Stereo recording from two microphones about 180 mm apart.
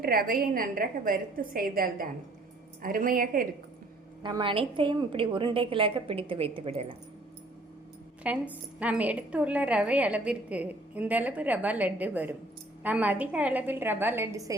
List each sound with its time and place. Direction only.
0.0 s a woman's voice: 55° right (ahead or behind)
4.2 s a woman's voice: 25° right (ahead or behind)
8.2 s a woman's voice: 5° right (ahead or behind)